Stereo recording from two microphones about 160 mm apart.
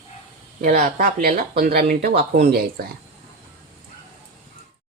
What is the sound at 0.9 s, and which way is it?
Speech, 65° right (ahead or behind).